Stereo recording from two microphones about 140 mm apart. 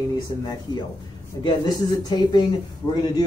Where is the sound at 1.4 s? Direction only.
30° left (ahead or behind).